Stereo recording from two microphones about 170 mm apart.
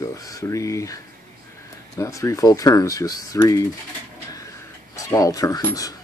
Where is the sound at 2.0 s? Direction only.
20° left (ahead or behind).